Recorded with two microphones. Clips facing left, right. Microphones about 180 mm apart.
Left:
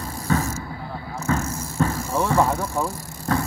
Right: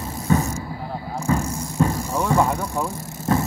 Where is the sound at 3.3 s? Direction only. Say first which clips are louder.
Right 2 dB; 20° right (ahead or behind).